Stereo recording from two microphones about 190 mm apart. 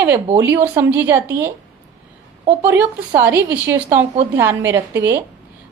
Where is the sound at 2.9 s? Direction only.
10° right (ahead or behind).